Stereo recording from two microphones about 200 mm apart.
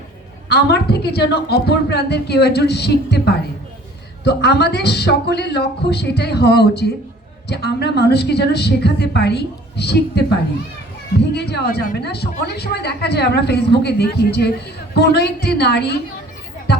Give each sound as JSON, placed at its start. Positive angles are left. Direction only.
{"t": 0.4, "sound": "a woman's voice", "side_deg": 55}
{"t": 11.3, "sound": "a woman's voice", "side_deg": 55}
{"t": 16.7, "sound": "music", "side_deg": 55}